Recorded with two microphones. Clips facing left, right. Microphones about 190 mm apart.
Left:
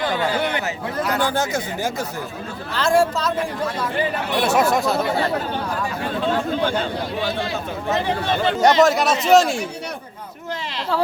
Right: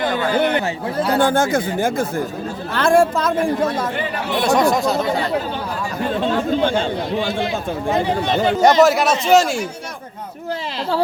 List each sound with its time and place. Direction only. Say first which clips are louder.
0.3 s speech: right 5 dB; 50° right (ahead or behind)
0.5 s speech: right 4 dB; 30° right (ahead or behind)
1.2 s speech: right 5 dB; 50° right (ahead or behind)
4.4 s a man's voice: right 2 dB; 5° left (ahead or behind)
6.6 s speech: right 3 dB; 25° right (ahead or behind)
8.6 s a man's voice: right 2 dB; 5° right (ahead or behind)